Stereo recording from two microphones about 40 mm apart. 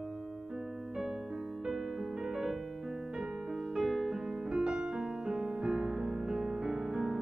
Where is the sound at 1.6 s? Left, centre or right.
Centre.